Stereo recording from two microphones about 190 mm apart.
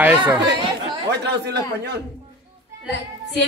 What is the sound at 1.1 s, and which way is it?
Speech, 60° right (ahead or behind).